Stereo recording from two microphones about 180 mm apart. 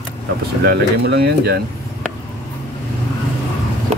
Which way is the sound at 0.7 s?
65° right (ahead or behind).